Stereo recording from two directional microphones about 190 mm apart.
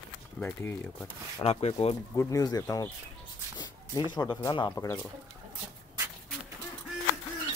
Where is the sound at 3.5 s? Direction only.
20° left (ahead or behind).